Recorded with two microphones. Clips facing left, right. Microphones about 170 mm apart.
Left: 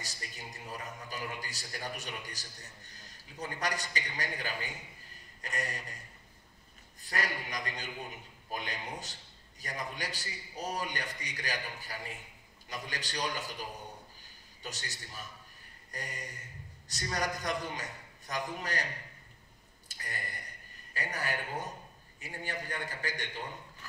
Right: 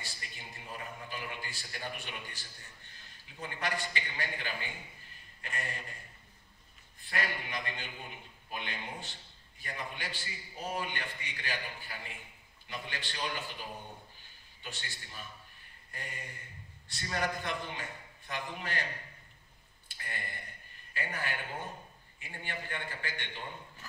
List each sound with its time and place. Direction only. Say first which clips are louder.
0.0 s a man's voice: left 3 dB; 40° left (ahead or behind)
7.0 s a man's voice: left 1 dB; 40° left (ahead or behind)
19.9 s a man's voice: even; 40° left (ahead or behind)